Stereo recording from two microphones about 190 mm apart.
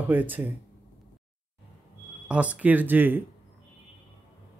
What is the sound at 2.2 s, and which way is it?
Speech, 5° right (ahead or behind).